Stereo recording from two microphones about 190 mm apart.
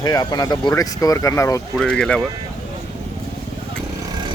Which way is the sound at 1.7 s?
5° left (ahead or behind).